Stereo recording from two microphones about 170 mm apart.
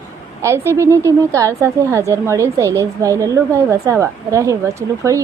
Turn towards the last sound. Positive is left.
turn(degrees=-20)  # may be behind; listen again after turning